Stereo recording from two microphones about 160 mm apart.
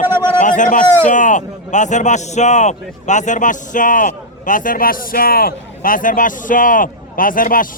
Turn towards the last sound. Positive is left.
turn(degrees=60)  # may be behind; listen again after turning